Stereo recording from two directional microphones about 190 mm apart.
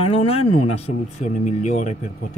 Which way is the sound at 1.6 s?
40° left (ahead or behind).